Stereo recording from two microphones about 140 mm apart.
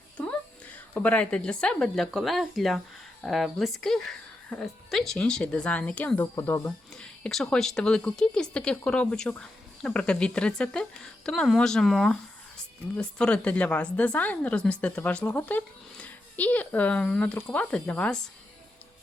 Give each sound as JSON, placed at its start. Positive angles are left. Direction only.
{"t": 0.3, "sound": "a woman's voice", "side_deg": 10}
{"t": 6.9, "sound": "speech", "side_deg": 5}